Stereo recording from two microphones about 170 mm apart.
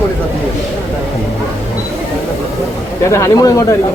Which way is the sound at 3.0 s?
15° left (ahead or behind).